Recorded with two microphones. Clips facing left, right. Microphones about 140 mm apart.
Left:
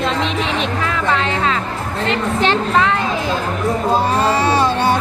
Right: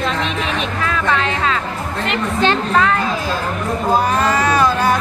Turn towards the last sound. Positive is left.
turn(degrees=30)  # may be behind; listen again after turning